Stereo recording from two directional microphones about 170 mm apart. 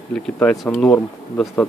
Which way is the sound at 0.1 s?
5° left (ahead or behind).